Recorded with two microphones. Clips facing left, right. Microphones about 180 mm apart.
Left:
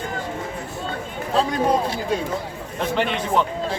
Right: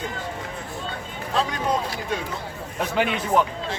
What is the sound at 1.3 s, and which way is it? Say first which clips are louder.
Speech: left 4 dB; 35° left (ahead or behind).